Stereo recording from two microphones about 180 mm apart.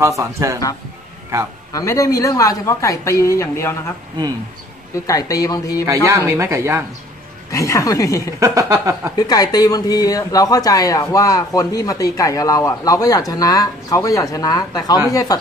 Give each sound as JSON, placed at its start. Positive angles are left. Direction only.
{"t": 0.0, "sound": "speech", "side_deg": -15}
{"t": 1.7, "sound": "speech", "side_deg": 20}
{"t": 5.0, "sound": "speech", "side_deg": 20}
{"t": 6.0, "sound": "speech", "side_deg": -15}
{"t": 7.5, "sound": "speech", "side_deg": 15}
{"t": 8.4, "sound": "speech", "side_deg": -15}
{"t": 9.1, "sound": "speech", "side_deg": 20}